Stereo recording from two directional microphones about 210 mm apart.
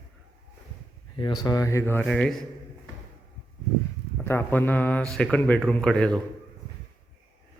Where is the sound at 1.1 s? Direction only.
20° left (ahead or behind); by 2.3 s 5° left (ahead or behind).